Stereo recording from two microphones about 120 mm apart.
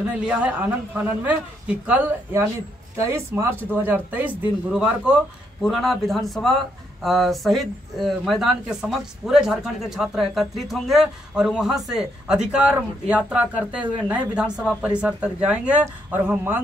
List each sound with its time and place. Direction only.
0.0 s speech: 10° right (ahead or behind)
3.0 s speech: 25° right (ahead or behind)